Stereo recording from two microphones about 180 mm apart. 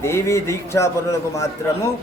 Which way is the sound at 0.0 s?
15° left (ahead or behind).